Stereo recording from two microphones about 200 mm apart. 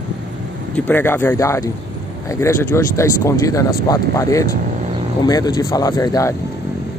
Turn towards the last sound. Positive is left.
turn(degrees=15)  # may be behind; listen again after turning